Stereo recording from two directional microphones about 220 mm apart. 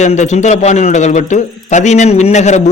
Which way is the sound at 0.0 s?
30° left (ahead or behind).